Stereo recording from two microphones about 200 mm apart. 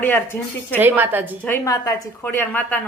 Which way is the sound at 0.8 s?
10° right (ahead or behind).